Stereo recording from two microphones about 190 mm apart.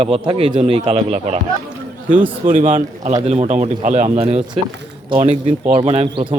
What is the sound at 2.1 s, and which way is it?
Speech, 10° right (ahead or behind).